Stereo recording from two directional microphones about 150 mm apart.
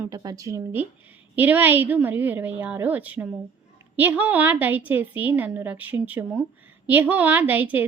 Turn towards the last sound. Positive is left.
turn(degrees=-10)  # may be behind; listen again after turning